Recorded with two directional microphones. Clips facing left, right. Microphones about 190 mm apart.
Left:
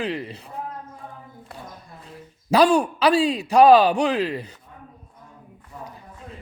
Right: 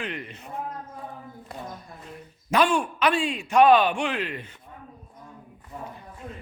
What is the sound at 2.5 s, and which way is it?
Speech, 35° left (ahead or behind).